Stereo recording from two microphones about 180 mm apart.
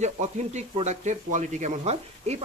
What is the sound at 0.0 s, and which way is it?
Speech, 40° right (ahead or behind).